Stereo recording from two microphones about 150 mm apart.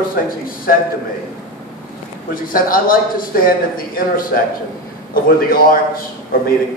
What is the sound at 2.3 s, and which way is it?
A man's voice, 70° left (ahead or behind).